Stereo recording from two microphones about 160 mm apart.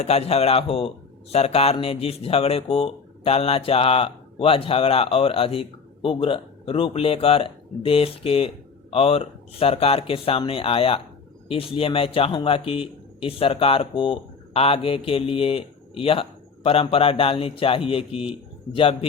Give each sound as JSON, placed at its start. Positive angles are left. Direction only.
{"t": 0.0, "sound": "speech", "side_deg": 40}